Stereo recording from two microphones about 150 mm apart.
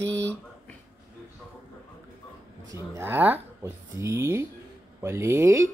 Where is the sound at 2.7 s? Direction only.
20° right (ahead or behind).